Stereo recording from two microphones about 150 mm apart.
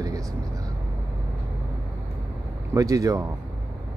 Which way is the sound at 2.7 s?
20° right (ahead or behind).